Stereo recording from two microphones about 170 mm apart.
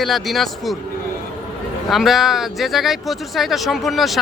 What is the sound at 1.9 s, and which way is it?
Speech, centre (ahead or behind).